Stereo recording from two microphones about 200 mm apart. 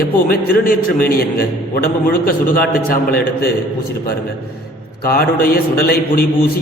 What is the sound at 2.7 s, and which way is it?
Speech, 45° left (ahead or behind).